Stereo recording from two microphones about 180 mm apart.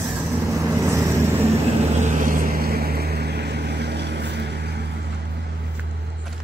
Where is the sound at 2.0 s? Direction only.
45° right (ahead or behind); by 4.8 s 65° right (ahead or behind).